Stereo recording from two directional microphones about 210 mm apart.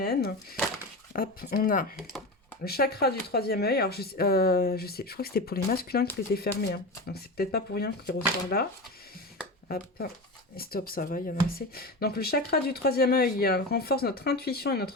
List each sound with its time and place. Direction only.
0.0 s speech: 45° left (ahead or behind)
9.6 s speech: 45° left (ahead or behind)